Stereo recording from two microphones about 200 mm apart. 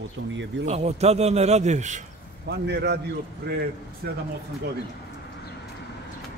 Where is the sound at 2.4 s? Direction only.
55° right (ahead or behind).